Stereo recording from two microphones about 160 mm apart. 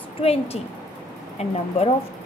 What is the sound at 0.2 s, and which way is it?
Speech, 40° left (ahead or behind).